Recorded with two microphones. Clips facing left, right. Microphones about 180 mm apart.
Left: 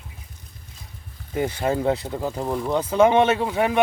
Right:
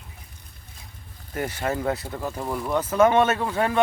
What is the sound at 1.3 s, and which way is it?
Speech, 15° left (ahead or behind).